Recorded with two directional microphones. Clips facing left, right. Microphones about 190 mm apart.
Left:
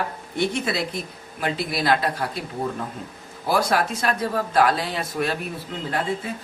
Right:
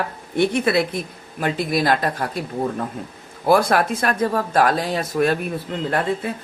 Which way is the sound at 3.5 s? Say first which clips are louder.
Right 5 dB; 55° right (ahead or behind).